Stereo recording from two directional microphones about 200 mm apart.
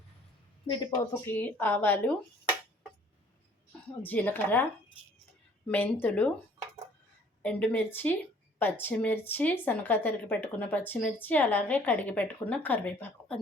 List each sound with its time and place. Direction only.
0.7 s a woman's voice: 20° left (ahead or behind)
4.0 s speech: 10° left (ahead or behind)
7.4 s speech: 10° left (ahead or behind)